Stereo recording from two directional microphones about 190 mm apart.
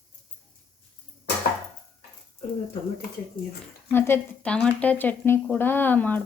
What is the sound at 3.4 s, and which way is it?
Speech, 45° left (ahead or behind).